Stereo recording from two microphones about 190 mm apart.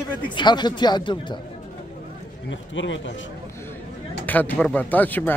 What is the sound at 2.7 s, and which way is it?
Speech, 80° left.